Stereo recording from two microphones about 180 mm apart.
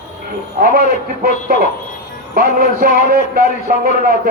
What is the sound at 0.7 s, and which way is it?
Speech, 55° right (ahead or behind).